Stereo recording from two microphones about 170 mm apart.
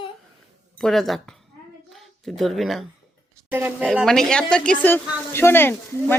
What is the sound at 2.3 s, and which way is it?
Speech, centre (ahead or behind).